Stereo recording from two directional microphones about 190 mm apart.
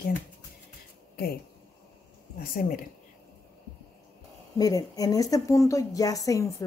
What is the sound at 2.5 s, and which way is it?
Speech, 45° left (ahead or behind).